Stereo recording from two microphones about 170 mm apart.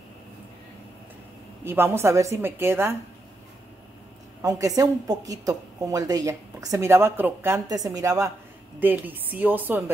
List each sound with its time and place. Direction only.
1.6 s a woman's voice: 15° right (ahead or behind)
4.4 s a woman's voice: 20° right (ahead or behind)